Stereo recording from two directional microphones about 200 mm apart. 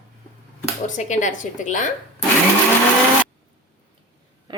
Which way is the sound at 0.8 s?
40° left (ahead or behind).